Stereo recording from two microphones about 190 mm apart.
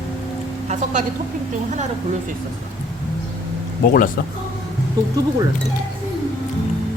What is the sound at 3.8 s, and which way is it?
Speech, 45° left (ahead or behind).